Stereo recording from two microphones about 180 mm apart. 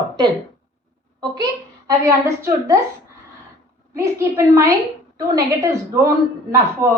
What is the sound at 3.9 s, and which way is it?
A woman's voice, 15° right (ahead or behind).